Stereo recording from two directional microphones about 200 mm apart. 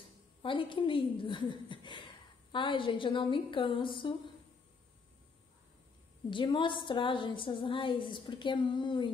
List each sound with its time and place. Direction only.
0.4 s a woman's voice: 25° left (ahead or behind)
6.3 s a woman's voice: 25° left (ahead or behind)